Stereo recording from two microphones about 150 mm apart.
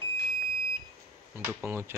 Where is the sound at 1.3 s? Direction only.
15° right (ahead or behind).